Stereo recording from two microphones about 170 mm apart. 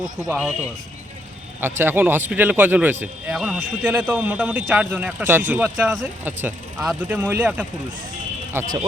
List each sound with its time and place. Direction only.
0.2 s speech: centre (ahead or behind)
1.6 s speech: 15° right (ahead or behind)